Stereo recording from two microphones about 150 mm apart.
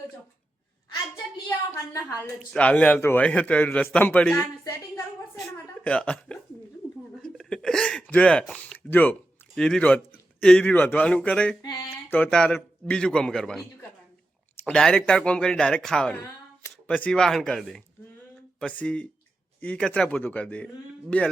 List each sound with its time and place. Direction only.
1.1 s speech: 20° left (ahead or behind)
2.5 s a man's voice: 5° left (ahead or behind)
4.6 s a sound: 20° left (ahead or behind)
7.2 s hiccup: 5° left (ahead or behind)
8.1 s a man's voice: 5° left (ahead or behind)
16.2 s a sound: 20° left (ahead or behind)
17.0 s a man's voice: 5° left (ahead or behind)